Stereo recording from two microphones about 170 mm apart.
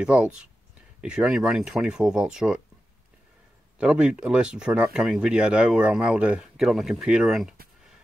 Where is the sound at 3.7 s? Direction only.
5° right (ahead or behind).